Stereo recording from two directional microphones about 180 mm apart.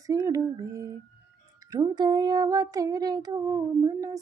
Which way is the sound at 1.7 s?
20° right (ahead or behind).